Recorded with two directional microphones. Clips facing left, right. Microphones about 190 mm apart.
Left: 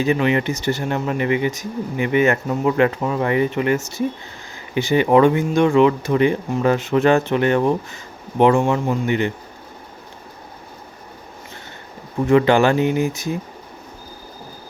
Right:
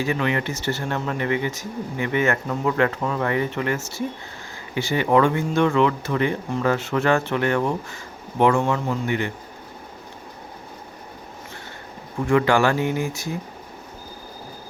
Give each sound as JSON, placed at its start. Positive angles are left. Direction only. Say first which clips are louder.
{"t": 0.0, "sound": "speech", "louder": "left 5 dB", "side_deg": 20}
{"t": 12.2, "sound": "speech", "louder": "left 4 dB", "side_deg": 20}